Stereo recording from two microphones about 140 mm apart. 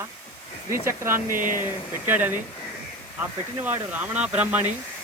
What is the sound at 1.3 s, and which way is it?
Speech, 75° right (ahead or behind).